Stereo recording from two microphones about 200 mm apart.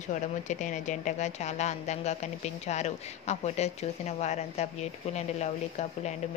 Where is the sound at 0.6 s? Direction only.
40° left (ahead or behind).